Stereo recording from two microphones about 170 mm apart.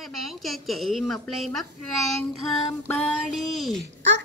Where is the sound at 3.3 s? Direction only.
Centre (ahead or behind).